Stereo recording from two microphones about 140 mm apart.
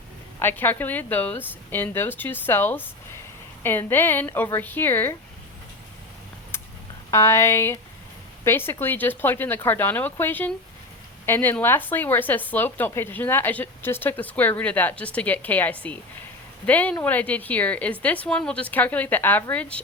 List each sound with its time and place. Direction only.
0.3 s speech: 15° left (ahead or behind)
7.1 s speech: 20° left (ahead or behind)